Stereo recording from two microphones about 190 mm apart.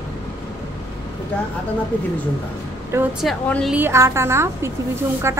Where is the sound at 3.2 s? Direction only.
5° left (ahead or behind).